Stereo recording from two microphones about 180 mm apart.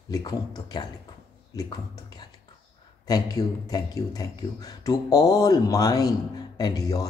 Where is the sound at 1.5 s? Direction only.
20° left (ahead or behind).